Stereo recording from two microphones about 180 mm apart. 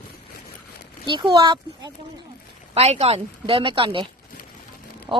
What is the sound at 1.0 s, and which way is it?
Speech, 25° right (ahead or behind).